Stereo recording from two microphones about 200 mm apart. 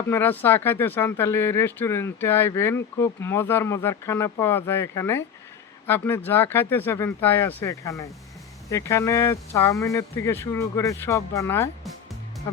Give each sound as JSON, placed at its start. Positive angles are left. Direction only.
{"t": 0.1, "sound": "speech", "side_deg": 10}